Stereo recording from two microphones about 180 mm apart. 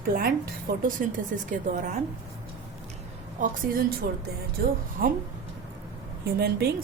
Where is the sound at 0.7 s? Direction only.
55° right (ahead or behind).